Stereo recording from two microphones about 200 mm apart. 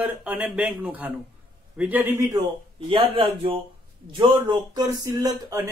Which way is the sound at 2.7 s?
30° right (ahead or behind).